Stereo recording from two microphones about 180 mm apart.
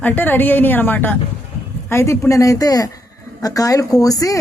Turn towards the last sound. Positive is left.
turn(degrees=20)  # may be behind; listen again after turning